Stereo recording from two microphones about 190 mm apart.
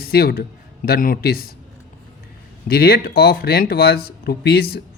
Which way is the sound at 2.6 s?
55° left (ahead or behind).